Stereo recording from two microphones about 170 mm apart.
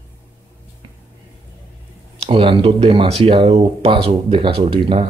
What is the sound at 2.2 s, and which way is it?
Speech, 35° right (ahead or behind).